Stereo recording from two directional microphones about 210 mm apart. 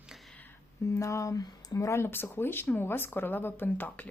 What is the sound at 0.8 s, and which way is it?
Speech, 15° left (ahead or behind).